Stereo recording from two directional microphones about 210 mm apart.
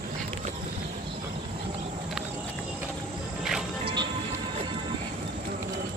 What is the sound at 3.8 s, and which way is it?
Music, 20° right (ahead or behind).